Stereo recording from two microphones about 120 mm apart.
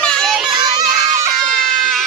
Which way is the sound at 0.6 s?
40° right (ahead or behind).